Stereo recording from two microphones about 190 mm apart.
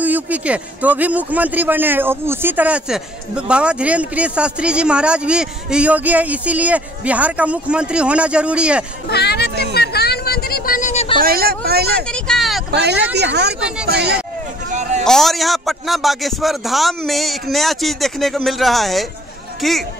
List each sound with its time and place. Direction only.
0.0 s a man's voice: 10° right (ahead or behind)
9.1 s speech: 60° left (ahead or behind)
9.8 s a sound: 55° left (ahead or behind); by 11.1 s 35° left (ahead or behind)
11.1 s speech: 50° right (ahead or behind)
12.0 s speech: 5° left (ahead or behind)
12.7 s speech: 60° right (ahead or behind)
13.6 s speech: 5° right (ahead or behind)
13.9 s speech: 60° right (ahead or behind)
14.7 s speech: 40° right (ahead or behind)
15.0 s speech: centre (ahead or behind)